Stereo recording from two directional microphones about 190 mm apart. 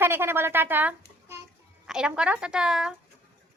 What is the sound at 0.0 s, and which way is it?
A woman's voice, 10° right (ahead or behind).